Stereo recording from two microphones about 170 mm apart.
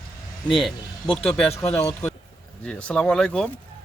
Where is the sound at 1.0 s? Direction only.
30° left (ahead or behind).